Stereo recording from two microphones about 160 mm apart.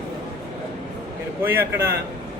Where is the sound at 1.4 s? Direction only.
15° right (ahead or behind).